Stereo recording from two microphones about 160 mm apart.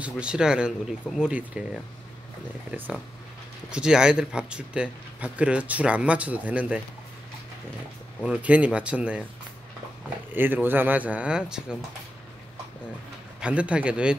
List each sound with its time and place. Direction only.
0.0 s speech: 5° right (ahead or behind)
8.2 s speech: 10° right (ahead or behind)
10.3 s speech: 10° right (ahead or behind)
13.4 s speech: 5° right (ahead or behind)